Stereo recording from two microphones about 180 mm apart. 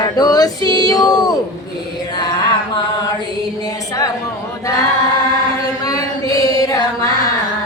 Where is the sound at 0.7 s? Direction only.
20° left (ahead or behind).